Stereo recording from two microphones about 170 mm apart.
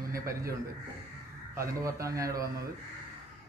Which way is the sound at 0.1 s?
20° right (ahead or behind).